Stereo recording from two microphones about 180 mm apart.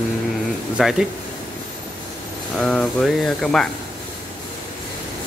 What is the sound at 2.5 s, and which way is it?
Speech, 5° left (ahead or behind).